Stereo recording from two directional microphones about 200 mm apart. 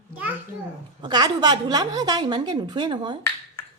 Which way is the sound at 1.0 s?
20° right (ahead or behind).